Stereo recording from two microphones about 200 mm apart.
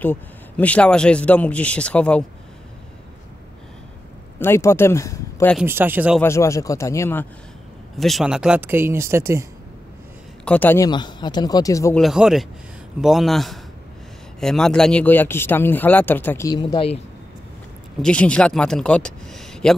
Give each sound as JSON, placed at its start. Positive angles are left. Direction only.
{"t": 0.0, "sound": "speech", "side_deg": 10}
{"t": 4.4, "sound": "speech", "side_deg": 15}
{"t": 5.7, "sound": "speech", "side_deg": -10}
{"t": 6.2, "sound": "speech", "side_deg": 15}
{"t": 8.0, "sound": "speech", "side_deg": 0}
{"t": 10.4, "sound": "speech", "side_deg": 10}
{"t": 10.9, "sound": "speech", "side_deg": 20}
{"t": 12.0, "sound": "speech", "side_deg": 0}
{"t": 18.0, "sound": "speech", "side_deg": 5}